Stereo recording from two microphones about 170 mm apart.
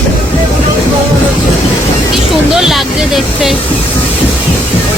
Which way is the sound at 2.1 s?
Centre (ahead or behind).